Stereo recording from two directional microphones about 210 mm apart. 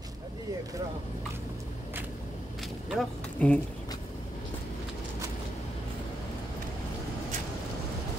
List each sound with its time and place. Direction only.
2.9 s speech: centre (ahead or behind)